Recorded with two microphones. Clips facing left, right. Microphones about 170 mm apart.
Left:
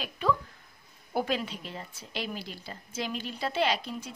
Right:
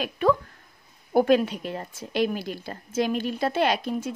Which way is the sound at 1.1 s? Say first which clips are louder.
Right 11 dB; 50° right (ahead or behind).